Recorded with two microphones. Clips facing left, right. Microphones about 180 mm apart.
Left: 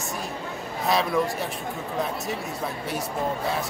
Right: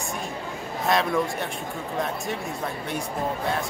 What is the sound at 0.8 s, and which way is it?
Speech, centre (ahead or behind).